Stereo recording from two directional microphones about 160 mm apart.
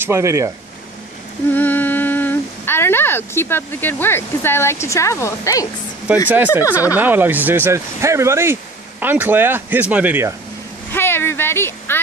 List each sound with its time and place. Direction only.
0.0 s speech: 15° right (ahead or behind)
1.5 s speech: 10° left (ahead or behind)
6.2 s speech: 10° right (ahead or behind)
6.6 s speech: 20° left (ahead or behind)
6.9 s speech: 10° right (ahead or behind)
10.9 s a sound: 15° left (ahead or behind)